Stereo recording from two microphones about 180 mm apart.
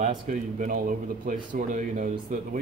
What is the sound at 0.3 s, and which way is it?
Speech, 50° right (ahead or behind).